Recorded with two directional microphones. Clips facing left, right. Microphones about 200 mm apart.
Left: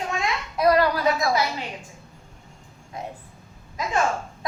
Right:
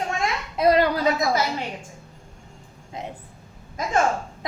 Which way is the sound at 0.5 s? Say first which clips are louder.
Right 1 dB; 25° right (ahead or behind).